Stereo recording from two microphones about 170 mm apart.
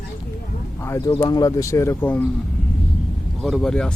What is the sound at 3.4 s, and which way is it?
Speech, centre (ahead or behind).